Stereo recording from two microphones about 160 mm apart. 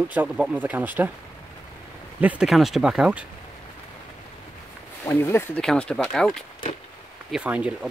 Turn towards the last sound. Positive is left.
turn(degrees=-10)  # may be behind; listen again after turning